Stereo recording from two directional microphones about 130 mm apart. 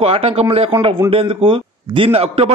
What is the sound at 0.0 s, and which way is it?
Speech, 50° right (ahead or behind).